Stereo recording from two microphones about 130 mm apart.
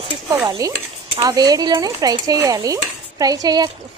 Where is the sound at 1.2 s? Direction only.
30° right (ahead or behind).